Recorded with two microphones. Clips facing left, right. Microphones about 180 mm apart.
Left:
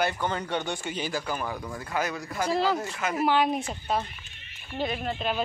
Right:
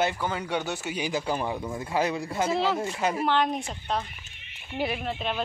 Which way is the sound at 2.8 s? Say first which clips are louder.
Right 2 dB; 25° right (ahead or behind).